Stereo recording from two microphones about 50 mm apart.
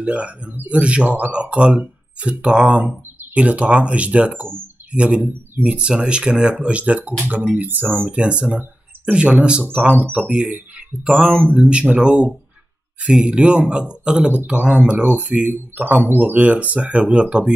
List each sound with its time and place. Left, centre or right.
0.0 s a man's voice: right
8.1 s a man's voice: right
9.7 s a man's voice: right
11.3 s speech: right
12.0 s a man's voice: right
16.3 s a man's voice: right